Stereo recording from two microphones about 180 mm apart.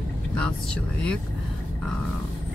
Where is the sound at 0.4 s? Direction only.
5° left (ahead or behind).